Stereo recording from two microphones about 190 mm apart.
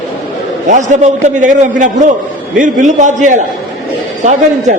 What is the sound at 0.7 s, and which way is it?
A man's voice, 40° right (ahead or behind).